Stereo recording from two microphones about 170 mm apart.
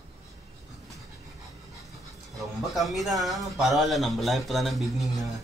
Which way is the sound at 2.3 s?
Centre (ahead or behind).